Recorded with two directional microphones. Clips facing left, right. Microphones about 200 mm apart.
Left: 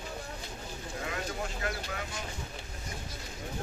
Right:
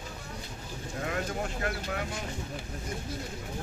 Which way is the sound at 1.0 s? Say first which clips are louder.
Right 4 dB; 50° right (ahead or behind).